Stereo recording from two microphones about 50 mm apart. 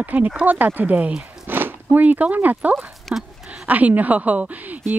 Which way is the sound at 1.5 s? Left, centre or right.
Right.